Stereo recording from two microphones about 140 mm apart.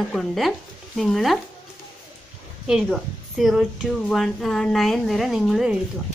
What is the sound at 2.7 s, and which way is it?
A woman's voice, centre (ahead or behind).